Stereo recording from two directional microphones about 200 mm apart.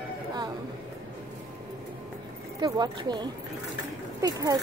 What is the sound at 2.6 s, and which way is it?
A woman's voice, 20° right (ahead or behind).